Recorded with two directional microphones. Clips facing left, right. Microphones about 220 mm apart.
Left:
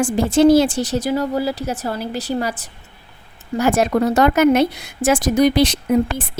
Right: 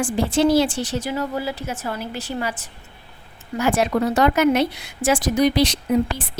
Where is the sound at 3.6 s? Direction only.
45° left (ahead or behind).